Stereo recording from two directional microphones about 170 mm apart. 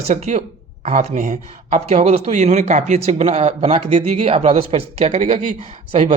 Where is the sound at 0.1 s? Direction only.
40° right (ahead or behind).